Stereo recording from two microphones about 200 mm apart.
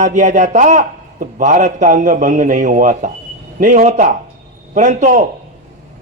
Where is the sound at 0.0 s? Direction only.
35° right (ahead or behind).